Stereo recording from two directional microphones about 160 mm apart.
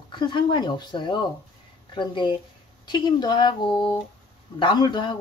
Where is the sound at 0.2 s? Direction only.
30° left (ahead or behind).